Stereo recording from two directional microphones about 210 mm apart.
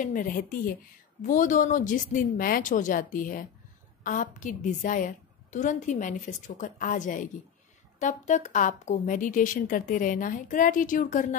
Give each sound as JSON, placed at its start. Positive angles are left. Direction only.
{"t": 0.0, "sound": "a woman's voice", "side_deg": 40}